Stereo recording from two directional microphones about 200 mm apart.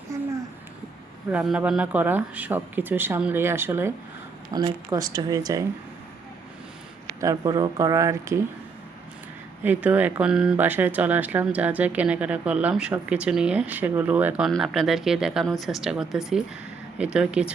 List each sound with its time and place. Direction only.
0.1 s a sound: 15° right (ahead or behind)
1.3 s speech: 5° right (ahead or behind)
7.2 s speech: 15° right (ahead or behind)
9.6 s speech: 10° right (ahead or behind)